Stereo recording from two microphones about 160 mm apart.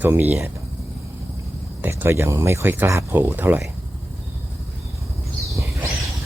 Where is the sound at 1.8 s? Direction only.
15° right (ahead or behind).